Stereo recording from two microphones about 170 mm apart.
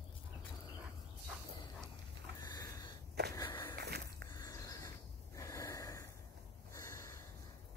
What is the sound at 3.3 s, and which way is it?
Walk, 25° left (ahead or behind).